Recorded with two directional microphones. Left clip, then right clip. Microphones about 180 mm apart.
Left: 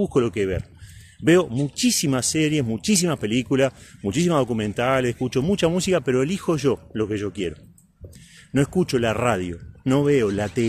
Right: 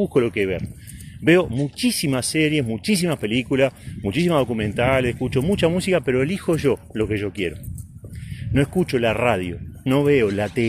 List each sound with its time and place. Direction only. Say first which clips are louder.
0.0 s speech: right 2 dB; 15° left (ahead or behind)